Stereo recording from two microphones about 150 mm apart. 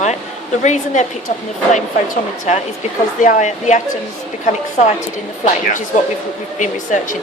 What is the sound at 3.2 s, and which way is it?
Speech, 55° left (ahead or behind).